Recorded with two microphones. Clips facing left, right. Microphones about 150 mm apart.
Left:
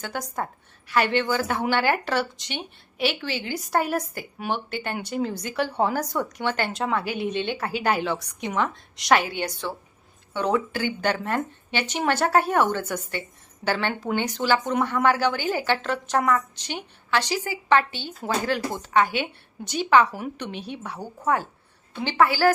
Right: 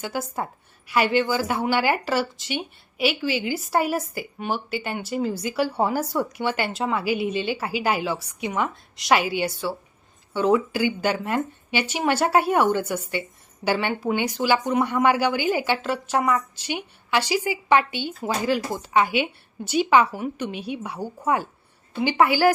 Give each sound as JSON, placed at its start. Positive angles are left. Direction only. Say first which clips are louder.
{"t": 0.0, "sound": "a woman's voice", "louder": "right 2 dB", "side_deg": -5}